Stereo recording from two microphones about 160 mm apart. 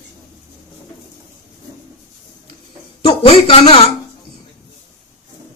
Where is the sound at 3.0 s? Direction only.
35° left (ahead or behind).